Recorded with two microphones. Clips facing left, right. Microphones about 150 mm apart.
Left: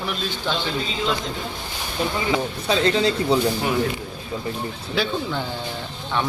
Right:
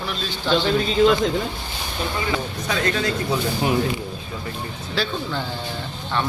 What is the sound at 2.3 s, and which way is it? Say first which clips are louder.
Speech: left 3 dB; 25° left (ahead or behind).